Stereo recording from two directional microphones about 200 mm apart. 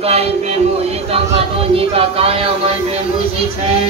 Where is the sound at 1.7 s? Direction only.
30° right (ahead or behind).